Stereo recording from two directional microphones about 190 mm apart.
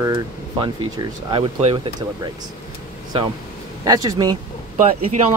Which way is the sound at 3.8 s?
20° right (ahead or behind).